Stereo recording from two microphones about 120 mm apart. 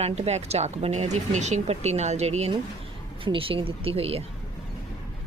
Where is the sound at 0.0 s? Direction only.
65° right (ahead or behind).